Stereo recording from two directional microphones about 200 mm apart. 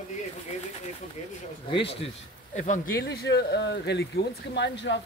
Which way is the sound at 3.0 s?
55° left (ahead or behind).